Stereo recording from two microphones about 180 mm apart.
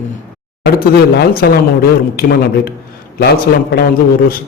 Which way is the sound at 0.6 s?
60° left (ahead or behind).